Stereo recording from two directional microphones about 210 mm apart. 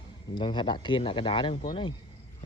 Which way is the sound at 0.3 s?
20° left (ahead or behind).